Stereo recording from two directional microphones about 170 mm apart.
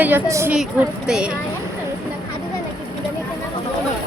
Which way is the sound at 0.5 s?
5° right (ahead or behind).